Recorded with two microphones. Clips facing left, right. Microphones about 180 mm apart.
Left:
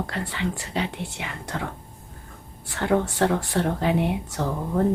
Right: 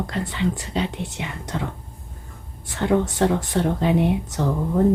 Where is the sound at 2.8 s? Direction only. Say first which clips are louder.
Right 2 dB; 15° right (ahead or behind).